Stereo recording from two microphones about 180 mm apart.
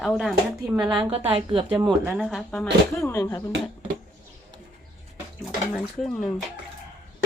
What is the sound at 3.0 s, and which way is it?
Speech, 15° left (ahead or behind).